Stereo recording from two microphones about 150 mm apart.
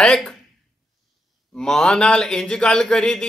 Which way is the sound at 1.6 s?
5° left (ahead or behind).